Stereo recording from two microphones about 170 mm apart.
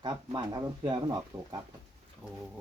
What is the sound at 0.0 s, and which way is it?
Speech, 25° right (ahead or behind).